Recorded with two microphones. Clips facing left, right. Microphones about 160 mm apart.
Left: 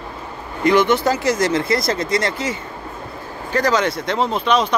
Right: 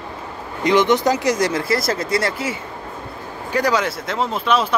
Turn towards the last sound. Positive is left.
turn(degrees=-5)  # may be behind; listen again after turning